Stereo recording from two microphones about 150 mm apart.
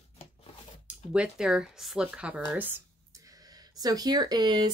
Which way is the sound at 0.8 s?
5° right (ahead or behind).